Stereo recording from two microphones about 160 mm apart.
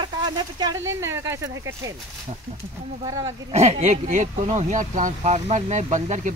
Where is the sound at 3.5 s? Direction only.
45° right (ahead or behind).